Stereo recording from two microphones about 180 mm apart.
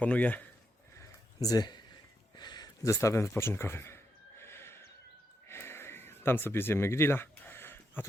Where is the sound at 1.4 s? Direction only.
20° left (ahead or behind).